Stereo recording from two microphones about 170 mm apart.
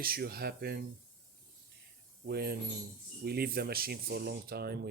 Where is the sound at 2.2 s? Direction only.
70° right (ahead or behind).